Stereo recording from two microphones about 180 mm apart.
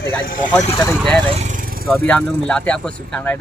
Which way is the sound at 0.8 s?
5° left (ahead or behind).